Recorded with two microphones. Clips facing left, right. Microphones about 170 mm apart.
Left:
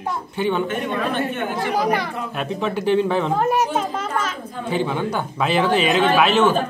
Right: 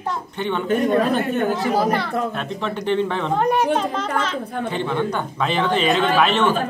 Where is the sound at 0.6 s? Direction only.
40° right (ahead or behind).